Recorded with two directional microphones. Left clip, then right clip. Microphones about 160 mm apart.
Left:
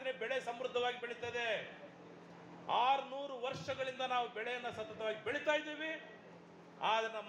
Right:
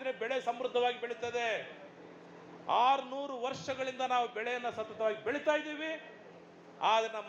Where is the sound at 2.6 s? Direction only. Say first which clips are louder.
Right 5 dB; 35° right (ahead or behind).